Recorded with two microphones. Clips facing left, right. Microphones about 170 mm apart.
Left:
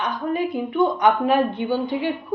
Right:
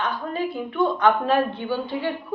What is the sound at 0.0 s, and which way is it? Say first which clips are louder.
Speech: left 3 dB; 15° left (ahead or behind).